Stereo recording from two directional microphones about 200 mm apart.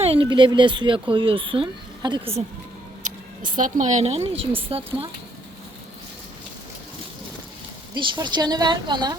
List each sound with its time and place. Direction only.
0.0 s speech: 25° right (ahead or behind)
3.0 s speech: 40° right (ahead or behind)
7.9 s speech: 25° right (ahead or behind)